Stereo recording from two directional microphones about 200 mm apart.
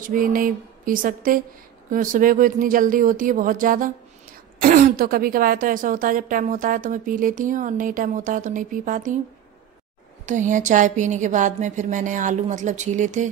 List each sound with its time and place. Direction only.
0.0 s a woman's voice: 45° right (ahead or behind)
10.2 s a woman's voice: 40° right (ahead or behind)